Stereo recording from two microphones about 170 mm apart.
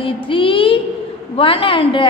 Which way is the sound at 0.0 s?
30° left (ahead or behind).